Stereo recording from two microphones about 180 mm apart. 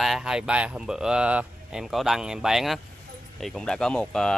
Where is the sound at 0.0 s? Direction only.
Centre (ahead or behind).